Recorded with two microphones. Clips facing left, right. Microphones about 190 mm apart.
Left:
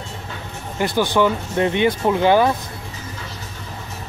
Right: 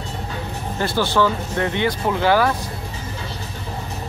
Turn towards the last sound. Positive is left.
turn(degrees=20)  # may be behind; listen again after turning